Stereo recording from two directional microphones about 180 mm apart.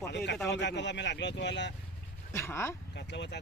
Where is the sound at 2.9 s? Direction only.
70° left (ahead or behind).